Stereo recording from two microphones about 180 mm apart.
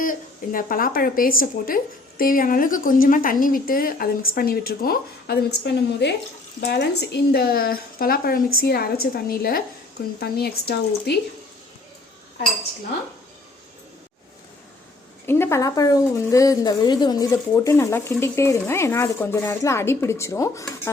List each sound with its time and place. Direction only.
0.0 s speech: 50° left (ahead or behind)
15.3 s speech: 15° left (ahead or behind)